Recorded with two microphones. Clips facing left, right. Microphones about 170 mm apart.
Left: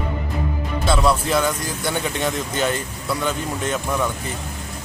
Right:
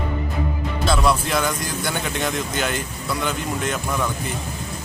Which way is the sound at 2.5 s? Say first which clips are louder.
Left 4 dB; 30° left (ahead or behind).